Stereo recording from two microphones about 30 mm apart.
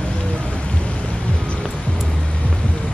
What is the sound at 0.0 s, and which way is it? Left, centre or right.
Music, left.